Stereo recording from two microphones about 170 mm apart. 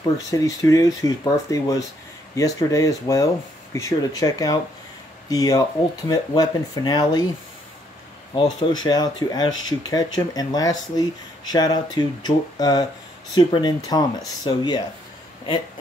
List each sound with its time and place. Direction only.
0.3 s speech: 20° left (ahead or behind)
8.4 s speech: 25° left (ahead or behind)